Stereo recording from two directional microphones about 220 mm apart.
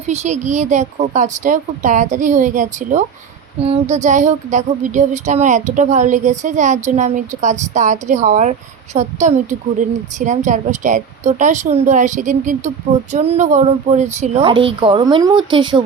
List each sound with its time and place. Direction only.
0.0 s speech: 30° right (ahead or behind)